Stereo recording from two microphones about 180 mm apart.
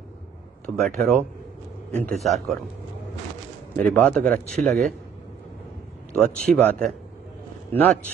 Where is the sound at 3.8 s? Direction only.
5° left (ahead or behind).